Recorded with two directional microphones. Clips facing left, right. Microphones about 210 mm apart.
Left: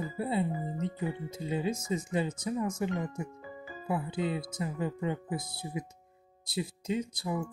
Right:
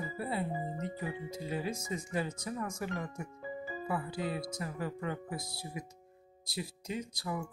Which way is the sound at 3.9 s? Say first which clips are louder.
Left 5 dB; 20° left (ahead or behind).